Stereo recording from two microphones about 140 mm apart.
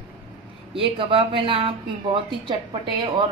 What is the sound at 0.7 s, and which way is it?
A woman's voice, 40° right (ahead or behind).